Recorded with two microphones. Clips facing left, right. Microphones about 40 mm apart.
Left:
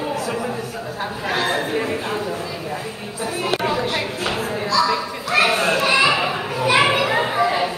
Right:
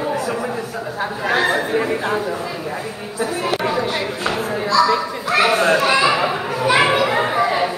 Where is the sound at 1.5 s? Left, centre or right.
Centre.